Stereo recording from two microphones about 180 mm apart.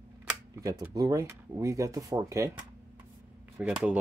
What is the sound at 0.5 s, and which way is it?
Speech, 15° right (ahead or behind).